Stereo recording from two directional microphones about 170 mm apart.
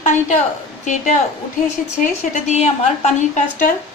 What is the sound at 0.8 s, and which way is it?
A woman's voice, 45° left (ahead or behind).